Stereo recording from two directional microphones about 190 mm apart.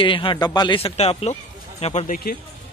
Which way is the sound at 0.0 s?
25° left (ahead or behind).